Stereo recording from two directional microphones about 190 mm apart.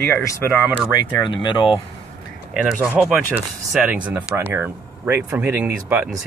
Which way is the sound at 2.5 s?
5° right (ahead or behind).